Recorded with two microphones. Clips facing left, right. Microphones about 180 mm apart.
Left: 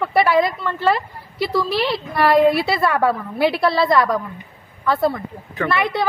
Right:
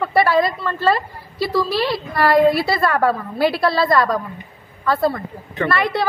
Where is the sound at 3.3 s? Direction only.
20° left (ahead or behind).